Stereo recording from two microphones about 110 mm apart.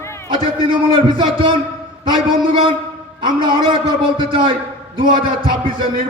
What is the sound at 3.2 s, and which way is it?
A man's voice, 45° right (ahead or behind).